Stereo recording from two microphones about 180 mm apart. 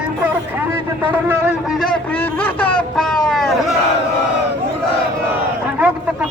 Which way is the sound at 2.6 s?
5° left (ahead or behind).